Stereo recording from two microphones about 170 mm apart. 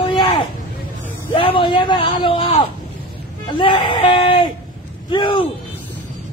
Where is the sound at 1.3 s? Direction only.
30° left (ahead or behind).